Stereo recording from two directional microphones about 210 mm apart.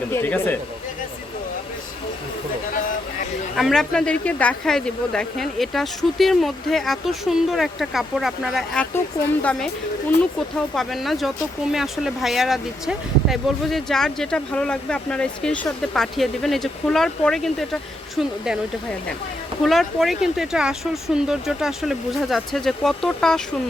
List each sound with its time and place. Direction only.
0.1 s speech: 10° left (ahead or behind)
3.5 s speech: centre (ahead or behind)
10.8 s speech: centre (ahead or behind)
19.6 s speech: centre (ahead or behind)